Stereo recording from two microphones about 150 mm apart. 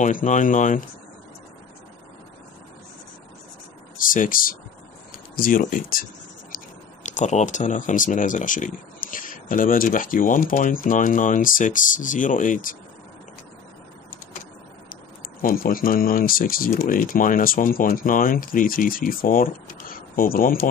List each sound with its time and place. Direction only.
0.0 s speech: 60° left (ahead or behind)
4.0 s speech: 65° left (ahead or behind)
6.5 s speech: 55° left (ahead or behind)
15.4 s speech: 75° left (ahead or behind)